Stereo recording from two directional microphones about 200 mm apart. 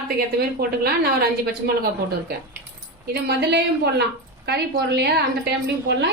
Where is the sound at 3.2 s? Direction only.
55° right (ahead or behind).